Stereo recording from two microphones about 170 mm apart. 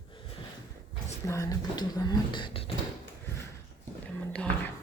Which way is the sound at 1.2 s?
20° left (ahead or behind).